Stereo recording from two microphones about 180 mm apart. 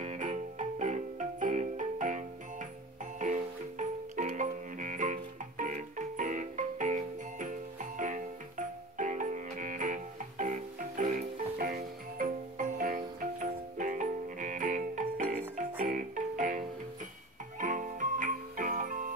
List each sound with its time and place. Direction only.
0.0 s music: 40° right (ahead or behind)